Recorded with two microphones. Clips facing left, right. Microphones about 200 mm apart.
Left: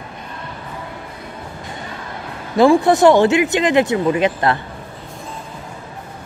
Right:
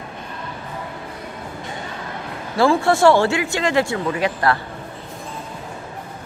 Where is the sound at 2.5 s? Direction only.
20° left (ahead or behind).